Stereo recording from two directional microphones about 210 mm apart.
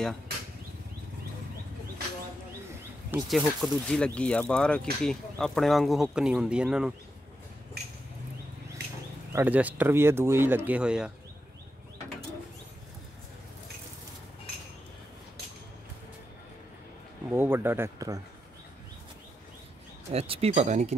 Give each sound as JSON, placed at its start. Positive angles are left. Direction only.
{"t": 3.1, "sound": "speech", "side_deg": 0}
{"t": 7.8, "sound": "a sound", "side_deg": -50}
{"t": 9.3, "sound": "speech", "side_deg": -10}
{"t": 17.3, "sound": "speech", "side_deg": -10}
{"t": 20.1, "sound": "speech", "side_deg": -30}